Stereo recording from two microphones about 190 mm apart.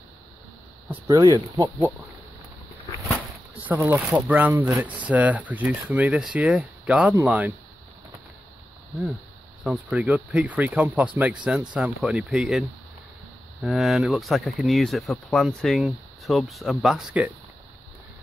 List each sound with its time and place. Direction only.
1.0 s speech: 20° right (ahead or behind)
3.6 s speech: 10° right (ahead or behind)
9.6 s speech: 5° right (ahead or behind)